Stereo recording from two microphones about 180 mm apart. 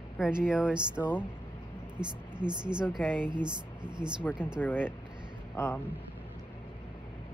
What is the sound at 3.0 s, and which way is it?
Speech, 10° left (ahead or behind).